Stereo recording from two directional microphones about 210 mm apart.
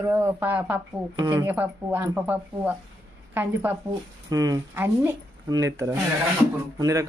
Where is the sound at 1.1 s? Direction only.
15° right (ahead or behind).